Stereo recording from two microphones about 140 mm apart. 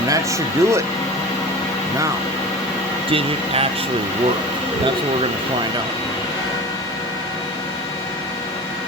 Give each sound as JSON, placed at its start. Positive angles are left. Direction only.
{"t": 0.1, "sound": "speech", "side_deg": -20}
{"t": 3.1, "sound": "speech", "side_deg": -40}